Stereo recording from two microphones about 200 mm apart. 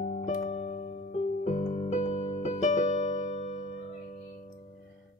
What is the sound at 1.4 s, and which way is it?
Electric piano, 35° left (ahead or behind).